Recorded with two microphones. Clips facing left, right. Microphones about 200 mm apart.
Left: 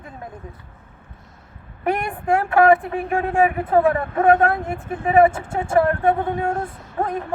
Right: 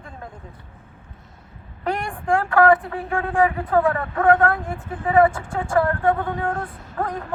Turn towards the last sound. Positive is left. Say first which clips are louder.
# left 3 dB
turn(degrees=25)  # may be behind; listen again after turning